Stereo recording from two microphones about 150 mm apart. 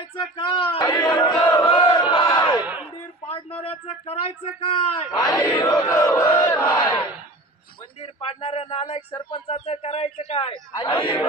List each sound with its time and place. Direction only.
0.5 s speech: 35° left (ahead or behind)
1.6 s battle cry: 30° left (ahead or behind)
3.3 s a sound: 40° left (ahead or behind)
3.8 s speech: 45° left (ahead or behind)
5.1 s speech: 25° left (ahead or behind)
5.8 s battle cry: 20° left (ahead or behind)
8.0 s a man's voice: 40° left (ahead or behind)